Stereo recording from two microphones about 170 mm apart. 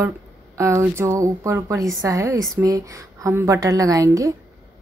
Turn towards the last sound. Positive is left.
turn(degrees=-20)  # may be behind; listen again after turning